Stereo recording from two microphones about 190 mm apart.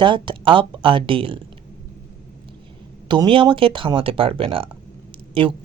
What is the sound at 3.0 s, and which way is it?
A woman's voice, 25° right (ahead or behind).